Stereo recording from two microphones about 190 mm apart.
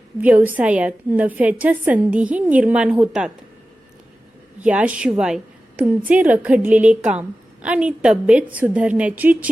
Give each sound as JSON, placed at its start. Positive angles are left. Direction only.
{"t": 0.2, "sound": "a woman's voice", "side_deg": -10}
{"t": 4.6, "sound": "a woman's voice", "side_deg": -5}